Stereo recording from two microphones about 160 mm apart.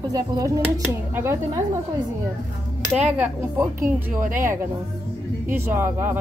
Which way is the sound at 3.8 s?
55° right (ahead or behind).